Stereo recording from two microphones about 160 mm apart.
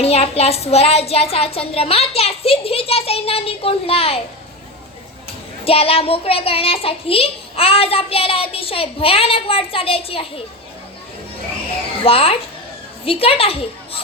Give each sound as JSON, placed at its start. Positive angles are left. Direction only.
{"t": 0.0, "sound": "a child's voice", "side_deg": 40}
{"t": 5.6, "sound": "a child's voice", "side_deg": 35}
{"t": 12.0, "sound": "a child's voice", "side_deg": 35}